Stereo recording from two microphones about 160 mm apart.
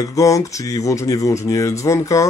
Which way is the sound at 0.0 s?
20° left (ahead or behind).